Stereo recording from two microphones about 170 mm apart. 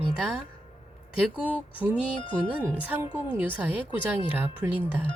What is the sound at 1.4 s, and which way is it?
Speech, 10° right (ahead or behind).